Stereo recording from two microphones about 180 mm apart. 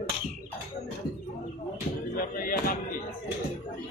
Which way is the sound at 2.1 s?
50° left (ahead or behind).